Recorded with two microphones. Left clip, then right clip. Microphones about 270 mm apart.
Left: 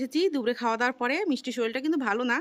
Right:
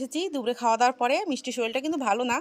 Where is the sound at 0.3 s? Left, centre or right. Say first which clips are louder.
Right 3 dB; centre.